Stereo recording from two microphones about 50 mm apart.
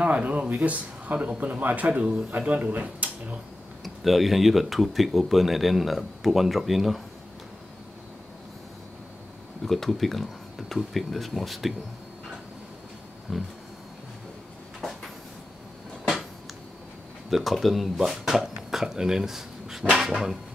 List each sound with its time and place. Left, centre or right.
0.0 s speech: right
3.8 s speech: centre
9.7 s speech: centre
13.3 s speech: centre
14.8 s cupboard open or close: centre
17.3 s speech: centre